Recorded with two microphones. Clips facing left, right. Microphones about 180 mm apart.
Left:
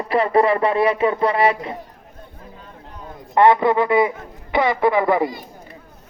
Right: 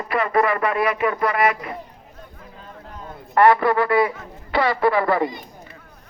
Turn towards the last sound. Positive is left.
turn(degrees=20)  # may be behind; listen again after turning